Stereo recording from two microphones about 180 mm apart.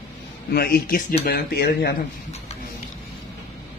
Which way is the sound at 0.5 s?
60° left (ahead or behind).